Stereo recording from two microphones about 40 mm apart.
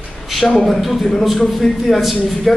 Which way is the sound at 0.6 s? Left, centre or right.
Centre.